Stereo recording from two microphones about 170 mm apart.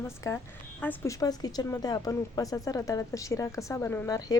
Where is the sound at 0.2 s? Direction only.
20° left (ahead or behind).